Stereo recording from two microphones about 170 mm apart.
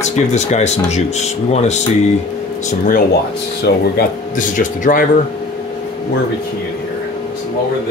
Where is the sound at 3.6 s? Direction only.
70° left (ahead or behind).